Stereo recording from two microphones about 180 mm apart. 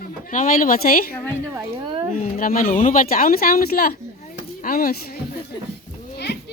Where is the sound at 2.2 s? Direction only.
50° left (ahead or behind).